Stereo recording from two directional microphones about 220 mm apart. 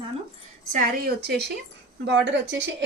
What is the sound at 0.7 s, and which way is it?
A woman's voice, 40° right (ahead or behind).